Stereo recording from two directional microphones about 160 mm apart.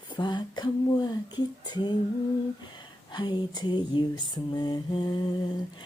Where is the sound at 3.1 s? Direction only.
30° left (ahead or behind).